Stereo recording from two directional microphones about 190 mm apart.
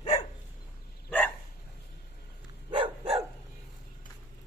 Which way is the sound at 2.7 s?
25° right (ahead or behind).